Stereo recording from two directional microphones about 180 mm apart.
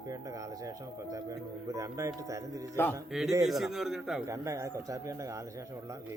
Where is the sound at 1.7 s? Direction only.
20° right (ahead or behind).